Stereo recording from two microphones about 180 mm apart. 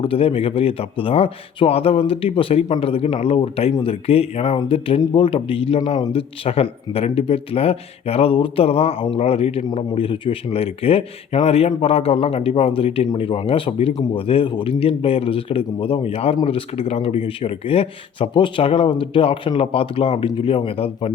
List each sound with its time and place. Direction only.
0.0 s a man's voice: 30° left (ahead or behind)